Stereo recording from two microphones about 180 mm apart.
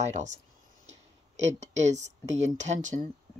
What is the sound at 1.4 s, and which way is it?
Speech, 40° right (ahead or behind).